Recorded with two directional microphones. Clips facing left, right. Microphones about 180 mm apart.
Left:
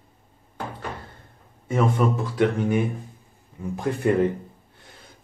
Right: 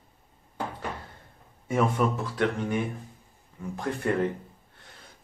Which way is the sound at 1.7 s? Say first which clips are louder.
Left 3 dB; 5° right (ahead or behind).